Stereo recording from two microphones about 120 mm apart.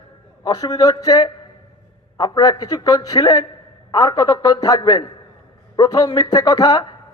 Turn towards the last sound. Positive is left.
turn(degrees=35)  # may be behind; listen again after turning